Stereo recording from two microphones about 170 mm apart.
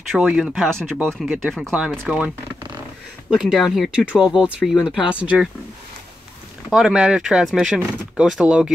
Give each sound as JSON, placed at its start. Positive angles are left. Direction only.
{"t": 0.1, "sound": "speech", "side_deg": 0}
{"t": 3.3, "sound": "speech", "side_deg": 0}
{"t": 6.7, "sound": "speech", "side_deg": -5}